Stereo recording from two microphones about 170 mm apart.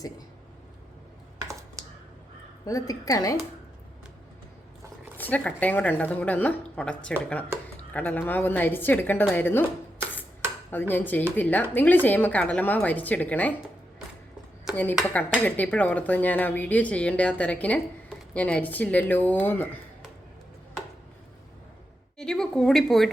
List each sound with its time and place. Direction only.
2.6 s a woman's voice: 20° left (ahead or behind)
5.1 s speech: 10° left (ahead or behind)
10.7 s speech: 10° left (ahead or behind)
14.7 s a sound: 5° right (ahead or behind)
15.4 s speech: 10° left (ahead or behind)
22.2 s speech: 5° left (ahead or behind)